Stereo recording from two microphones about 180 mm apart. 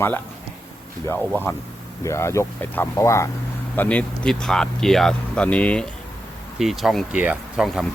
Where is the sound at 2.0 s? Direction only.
15° left (ahead or behind).